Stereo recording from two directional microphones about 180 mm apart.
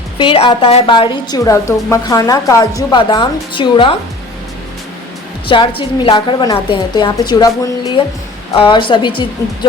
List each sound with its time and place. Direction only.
0.2 s a woman's voice: 30° left (ahead or behind)
5.5 s a woman's voice: 30° left (ahead or behind)